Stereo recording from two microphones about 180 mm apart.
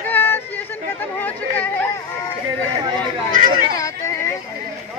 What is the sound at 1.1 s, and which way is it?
Chatter, 10° left (ahead or behind).